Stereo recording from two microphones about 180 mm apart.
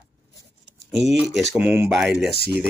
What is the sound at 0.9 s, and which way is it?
Speech, centre (ahead or behind).